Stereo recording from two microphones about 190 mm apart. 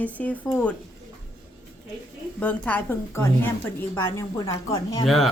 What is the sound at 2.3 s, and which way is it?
A woman's voice, 5° left (ahead or behind).